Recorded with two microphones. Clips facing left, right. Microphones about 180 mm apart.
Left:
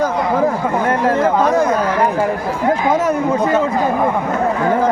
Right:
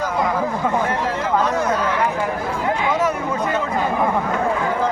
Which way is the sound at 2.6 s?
45° left (ahead or behind).